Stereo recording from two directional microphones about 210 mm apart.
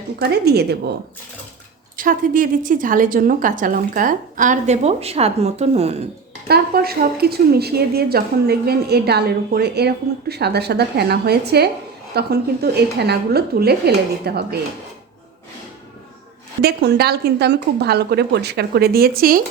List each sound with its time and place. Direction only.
0.2 s a woman's voice: 50° right (ahead or behind)
2.0 s a woman's voice: 40° right (ahead or behind)
6.5 s a woman's voice: 45° right (ahead or behind)
16.6 s a woman's voice: 50° right (ahead or behind)